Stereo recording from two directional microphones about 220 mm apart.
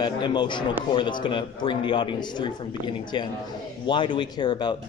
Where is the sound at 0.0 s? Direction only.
20° left (ahead or behind).